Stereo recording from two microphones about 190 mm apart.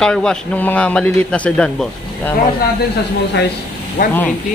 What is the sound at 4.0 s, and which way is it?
Speech, 45° left (ahead or behind).